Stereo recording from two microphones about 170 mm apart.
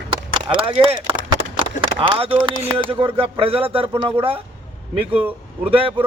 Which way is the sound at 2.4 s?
30° right (ahead or behind).